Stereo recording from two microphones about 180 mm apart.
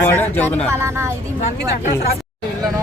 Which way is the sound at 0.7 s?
15° right (ahead or behind).